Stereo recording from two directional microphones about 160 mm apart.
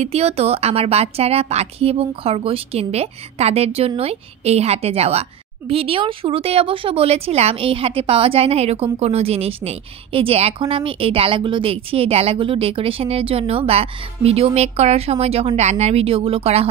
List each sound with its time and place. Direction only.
0.0 s speech: 40° right (ahead or behind)